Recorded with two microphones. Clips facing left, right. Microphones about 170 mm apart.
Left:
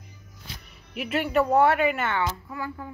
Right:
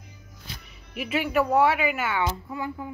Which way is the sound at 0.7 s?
Centre (ahead or behind).